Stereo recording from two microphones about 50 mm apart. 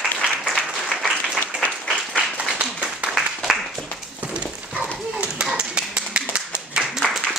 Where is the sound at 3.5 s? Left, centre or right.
Centre.